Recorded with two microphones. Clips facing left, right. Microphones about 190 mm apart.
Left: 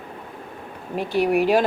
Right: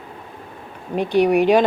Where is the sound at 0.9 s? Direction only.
5° left (ahead or behind).